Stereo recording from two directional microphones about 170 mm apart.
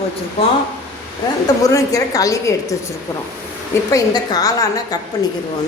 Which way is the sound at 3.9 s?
20° left (ahead or behind).